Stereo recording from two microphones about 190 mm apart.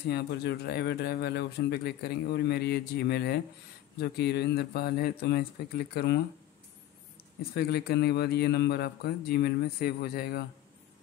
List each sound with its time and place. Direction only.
0.1 s speech: 60° left (ahead or behind)
7.5 s speech: 55° left (ahead or behind)